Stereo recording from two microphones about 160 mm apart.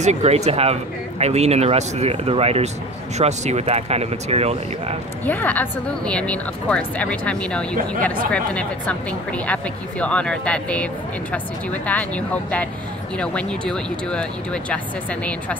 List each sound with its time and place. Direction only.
0.0 s speech: 45° right (ahead or behind)
5.2 s speech: 10° left (ahead or behind)